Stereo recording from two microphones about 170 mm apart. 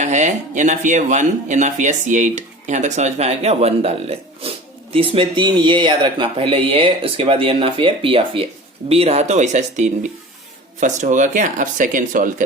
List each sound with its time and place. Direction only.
0.0 s speech: 45° right (ahead or behind)